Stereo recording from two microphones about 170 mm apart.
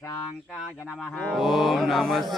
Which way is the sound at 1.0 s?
5° left (ahead or behind).